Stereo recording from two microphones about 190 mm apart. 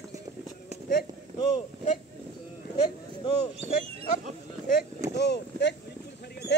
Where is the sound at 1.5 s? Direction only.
35° left (ahead or behind).